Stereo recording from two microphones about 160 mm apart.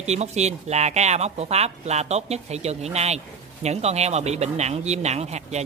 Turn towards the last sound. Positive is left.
turn(degrees=-45)  # may be behind; listen again after turning